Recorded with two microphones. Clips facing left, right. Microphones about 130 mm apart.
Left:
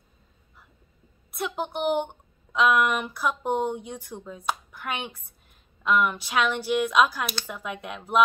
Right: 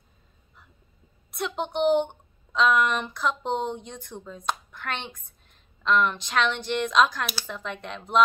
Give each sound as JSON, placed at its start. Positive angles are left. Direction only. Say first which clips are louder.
{"t": 1.3, "sound": "a woman's voice", "louder": "right 1 dB", "side_deg": 5}